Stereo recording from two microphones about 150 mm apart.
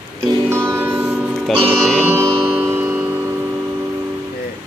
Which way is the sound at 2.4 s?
15° right (ahead or behind).